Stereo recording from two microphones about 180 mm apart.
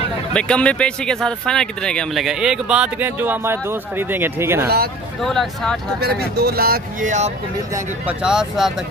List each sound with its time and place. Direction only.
0.3 s speech: 5° left (ahead or behind); by 4.6 s 15° right (ahead or behind)
5.2 s speech: centre (ahead or behind)
5.9 s speech: 60° right (ahead or behind); by 7.3 s 40° right (ahead or behind)
7.7 s speech: 5° right (ahead or behind)